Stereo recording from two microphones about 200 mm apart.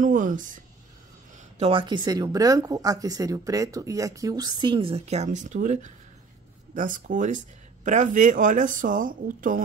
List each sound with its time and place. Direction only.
0.0 s speech: 40° right (ahead or behind)
1.6 s speech: 25° right (ahead or behind); by 9.6 s 45° right (ahead or behind)